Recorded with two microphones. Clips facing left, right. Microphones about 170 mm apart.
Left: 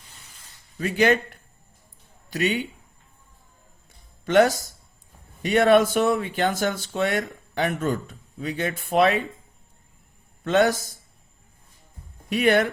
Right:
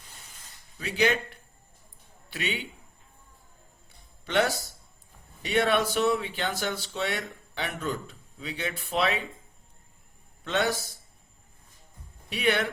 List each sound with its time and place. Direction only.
0.8 s speech: 50° left (ahead or behind)
4.3 s speech: 45° left (ahead or behind)
10.4 s speech: 45° left (ahead or behind)
12.3 s speech: 45° left (ahead or behind)